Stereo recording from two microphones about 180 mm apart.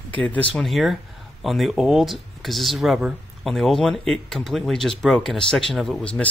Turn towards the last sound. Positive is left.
turn(degrees=0)  # may be behind; listen again after turning